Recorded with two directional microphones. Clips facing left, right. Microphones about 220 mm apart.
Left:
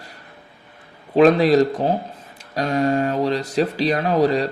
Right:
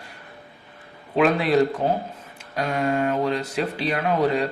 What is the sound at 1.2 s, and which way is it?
Speech, 35° left (ahead or behind).